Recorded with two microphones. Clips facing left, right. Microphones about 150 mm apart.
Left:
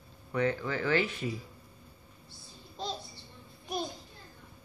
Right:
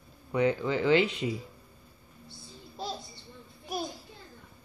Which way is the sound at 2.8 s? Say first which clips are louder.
Right 1 dB; 10° right (ahead or behind).